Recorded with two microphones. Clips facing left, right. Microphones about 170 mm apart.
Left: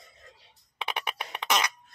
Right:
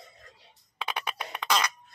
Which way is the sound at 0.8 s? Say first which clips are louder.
Even; 20° left (ahead or behind).